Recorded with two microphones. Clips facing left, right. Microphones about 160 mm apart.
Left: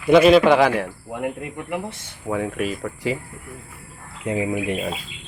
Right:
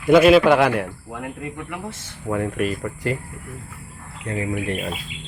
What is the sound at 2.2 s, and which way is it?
Speech, 5° left (ahead or behind).